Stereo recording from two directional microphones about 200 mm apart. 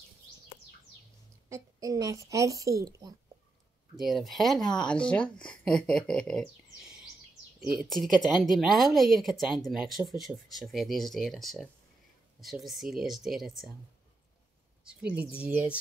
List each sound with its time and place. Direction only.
1.5 s a woman's voice: 15° right (ahead or behind)
4.0 s speech: centre (ahead or behind)
7.7 s speech: centre (ahead or behind)
14.9 s a woman's voice: 5° right (ahead or behind)